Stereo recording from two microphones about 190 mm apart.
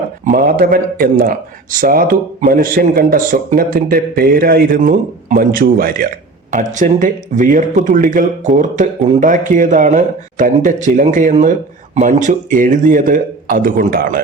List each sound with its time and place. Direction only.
0.3 s speech: 45° right (ahead or behind)